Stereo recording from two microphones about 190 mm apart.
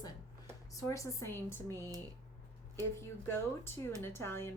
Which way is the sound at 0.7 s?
15° left (ahead or behind).